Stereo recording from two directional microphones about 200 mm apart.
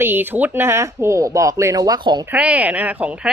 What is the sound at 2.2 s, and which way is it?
A woman's voice, 5° right (ahead or behind).